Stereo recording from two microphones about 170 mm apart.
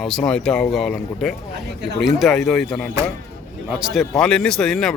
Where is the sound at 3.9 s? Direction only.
5° left (ahead or behind).